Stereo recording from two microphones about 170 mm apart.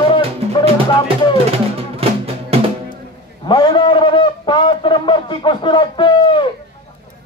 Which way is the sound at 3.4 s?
25° left (ahead or behind).